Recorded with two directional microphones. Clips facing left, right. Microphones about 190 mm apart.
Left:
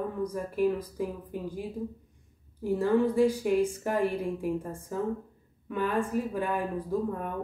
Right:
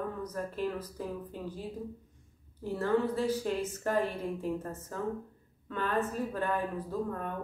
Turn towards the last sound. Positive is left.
turn(degrees=10)  # may be behind; listen again after turning